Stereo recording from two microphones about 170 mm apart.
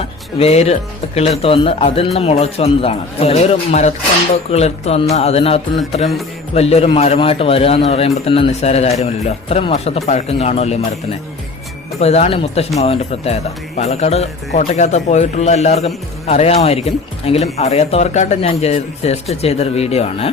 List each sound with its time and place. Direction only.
0.3 s a man's voice: 40° left (ahead or behind)